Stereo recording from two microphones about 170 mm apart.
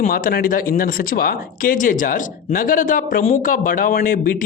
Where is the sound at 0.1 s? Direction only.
60° left (ahead or behind).